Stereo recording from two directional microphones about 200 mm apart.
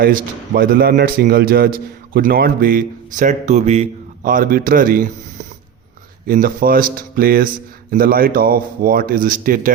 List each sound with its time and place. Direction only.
0.0 s a man's voice: 45° right (ahead or behind)
6.2 s a man's voice: 45° right (ahead or behind)